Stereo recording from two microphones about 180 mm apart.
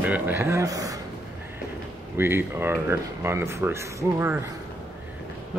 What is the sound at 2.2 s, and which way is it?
Speech, 15° right (ahead or behind).